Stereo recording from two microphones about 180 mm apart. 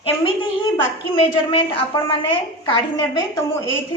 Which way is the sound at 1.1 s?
30° left (ahead or behind).